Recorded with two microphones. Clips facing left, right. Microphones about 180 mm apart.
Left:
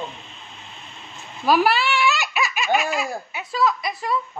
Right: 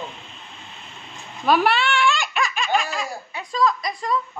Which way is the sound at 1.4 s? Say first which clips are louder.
Even; 5° left (ahead or behind).